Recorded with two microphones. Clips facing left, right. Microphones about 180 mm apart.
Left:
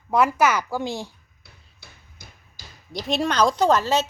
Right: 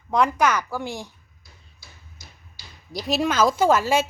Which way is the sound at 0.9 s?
15° right (ahead or behind).